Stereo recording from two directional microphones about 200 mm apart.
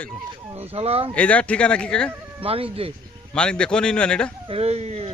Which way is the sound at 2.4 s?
30° right (ahead or behind).